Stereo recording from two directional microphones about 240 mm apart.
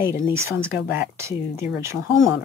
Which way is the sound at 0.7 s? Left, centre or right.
Left.